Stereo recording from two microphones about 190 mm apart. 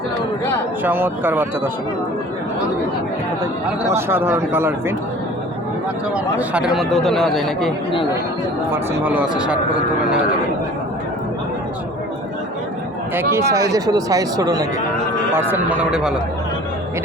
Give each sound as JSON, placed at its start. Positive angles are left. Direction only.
{"t": 0.9, "sound": "speech", "side_deg": -10}
{"t": 3.8, "sound": "speech", "side_deg": -10}
{"t": 6.1, "sound": "speech", "side_deg": -5}
{"t": 8.7, "sound": "speech", "side_deg": -10}
{"t": 13.3, "sound": "speech", "side_deg": -15}